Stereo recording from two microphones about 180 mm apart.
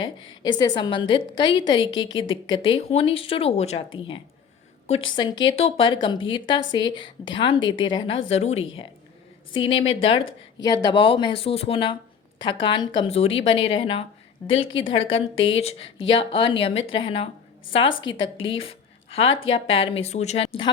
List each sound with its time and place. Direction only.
0.6 s a woman's voice: 25° left (ahead or behind)
18.1 s speech: 90° left
18.4 s speech: 30° left (ahead or behind)